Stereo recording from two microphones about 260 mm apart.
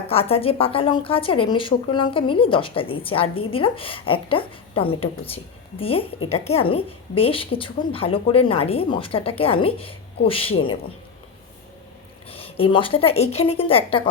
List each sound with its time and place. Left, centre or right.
0.1 s a woman's voice: left
12.3 s a woman's voice: left